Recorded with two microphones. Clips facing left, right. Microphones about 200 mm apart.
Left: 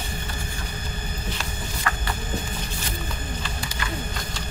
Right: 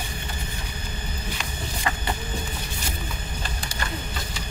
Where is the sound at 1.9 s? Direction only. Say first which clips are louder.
Right 1 dB; 20° right (ahead or behind).